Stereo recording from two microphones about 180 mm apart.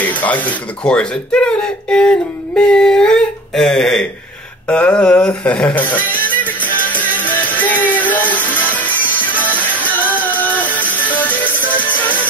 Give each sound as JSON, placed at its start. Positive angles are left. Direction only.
{"t": 0.0, "sound": "speech", "side_deg": 10}
{"t": 6.9, "sound": "music", "side_deg": 10}